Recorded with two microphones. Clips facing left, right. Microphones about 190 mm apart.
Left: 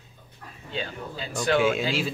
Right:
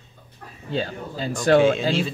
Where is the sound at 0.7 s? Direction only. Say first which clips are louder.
Right 6 dB; 40° right (ahead or behind).